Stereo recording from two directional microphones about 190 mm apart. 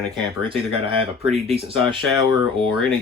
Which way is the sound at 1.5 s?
30° right (ahead or behind).